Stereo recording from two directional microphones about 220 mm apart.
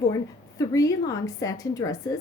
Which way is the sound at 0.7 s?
15° left (ahead or behind).